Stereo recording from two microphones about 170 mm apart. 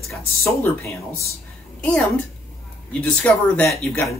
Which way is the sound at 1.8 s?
5° left (ahead or behind).